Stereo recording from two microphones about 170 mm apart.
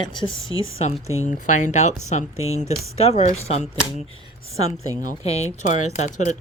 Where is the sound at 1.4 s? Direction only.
45° left (ahead or behind).